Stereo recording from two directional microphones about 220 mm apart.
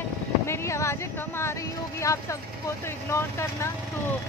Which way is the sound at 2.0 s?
15° left (ahead or behind).